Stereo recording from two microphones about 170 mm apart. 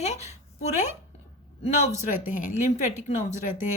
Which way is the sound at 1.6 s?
40° left (ahead or behind).